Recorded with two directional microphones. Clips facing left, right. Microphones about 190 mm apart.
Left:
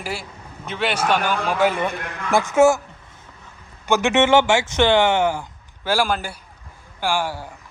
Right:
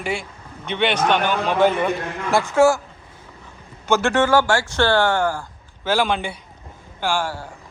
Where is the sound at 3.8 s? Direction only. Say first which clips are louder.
Left 1 dB; 15° left (ahead or behind).